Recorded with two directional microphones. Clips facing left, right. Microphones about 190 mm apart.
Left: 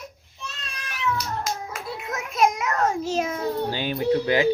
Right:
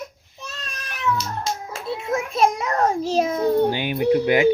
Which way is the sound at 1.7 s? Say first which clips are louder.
Right 7 dB; 25° right (ahead or behind).